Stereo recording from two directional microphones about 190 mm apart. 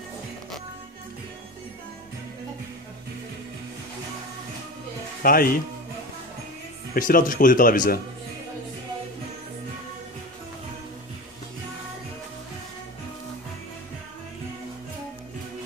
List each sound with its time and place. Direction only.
5.2 s speech: 50° left (ahead or behind)
6.9 s speech: 45° left (ahead or behind)